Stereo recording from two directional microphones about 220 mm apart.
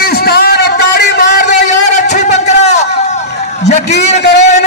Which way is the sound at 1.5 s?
35° left (ahead or behind).